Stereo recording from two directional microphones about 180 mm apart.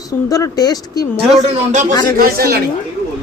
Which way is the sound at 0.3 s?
20° left (ahead or behind).